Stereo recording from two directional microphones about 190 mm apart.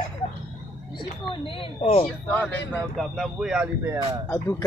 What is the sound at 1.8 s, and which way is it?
Speech, 30° left (ahead or behind).